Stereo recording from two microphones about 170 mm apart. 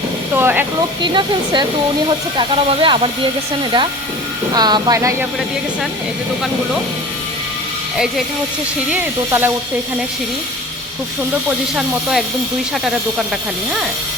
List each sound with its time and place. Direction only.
0.3 s hiss: 15° right (ahead or behind)
1.0 s speech: 25° right (ahead or behind)
7.9 s speech: 5° right (ahead or behind)